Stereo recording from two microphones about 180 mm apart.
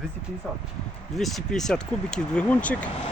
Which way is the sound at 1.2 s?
Centre (ahead or behind).